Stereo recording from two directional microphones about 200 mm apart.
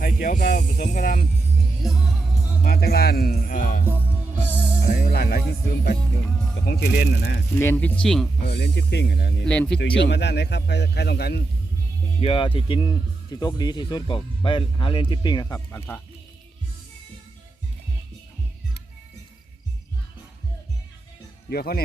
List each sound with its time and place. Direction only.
0.2 s speech: 45° left (ahead or behind)
1.8 s music: centre (ahead or behind)
2.6 s speech: 50° left (ahead or behind)
4.4 s music: 5° right (ahead or behind)
4.9 s speech: 50° left (ahead or behind)
6.0 s music: centre (ahead or behind)
6.7 s speech: 50° left (ahead or behind)
7.5 s speech: 10° left (ahead or behind)
8.4 s a man's voice: 55° left (ahead or behind)
9.5 s music: 5° left (ahead or behind)
9.7 s a man's voice: 60° left (ahead or behind)
12.2 s speech: 25° left (ahead or behind); by 16.0 s 10° left (ahead or behind)
21.5 s speech: 50° left (ahead or behind)